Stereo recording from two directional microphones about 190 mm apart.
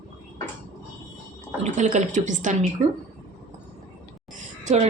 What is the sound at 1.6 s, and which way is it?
Speech, 40° right (ahead or behind).